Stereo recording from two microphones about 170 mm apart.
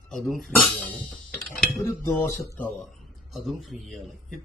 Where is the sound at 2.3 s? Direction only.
15° left (ahead or behind).